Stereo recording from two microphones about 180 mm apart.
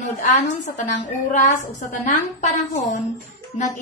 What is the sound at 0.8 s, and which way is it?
A woman's voice, 45° left (ahead or behind).